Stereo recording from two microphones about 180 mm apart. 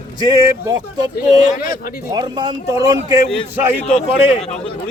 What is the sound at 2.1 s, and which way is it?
Speech, 25° right (ahead or behind).